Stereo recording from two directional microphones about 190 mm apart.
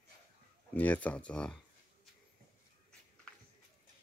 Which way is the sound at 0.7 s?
10° left (ahead or behind).